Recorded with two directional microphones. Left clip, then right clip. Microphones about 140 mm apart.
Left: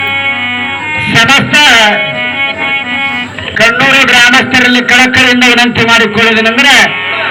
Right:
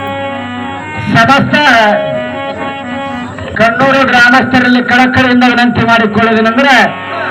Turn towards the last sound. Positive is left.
turn(degrees=-40)  # may be behind; listen again after turning